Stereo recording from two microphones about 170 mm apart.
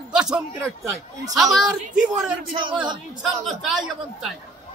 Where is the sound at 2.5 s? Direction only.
30° right (ahead or behind).